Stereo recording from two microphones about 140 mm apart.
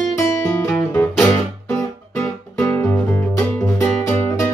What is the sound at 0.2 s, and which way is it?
Guitar, 20° left (ahead or behind).